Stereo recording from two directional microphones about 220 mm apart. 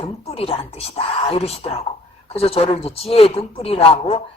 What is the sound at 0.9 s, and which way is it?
Speech, 25° left (ahead or behind).